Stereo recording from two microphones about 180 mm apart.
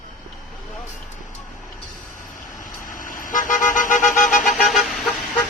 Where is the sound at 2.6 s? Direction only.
45° left (ahead or behind).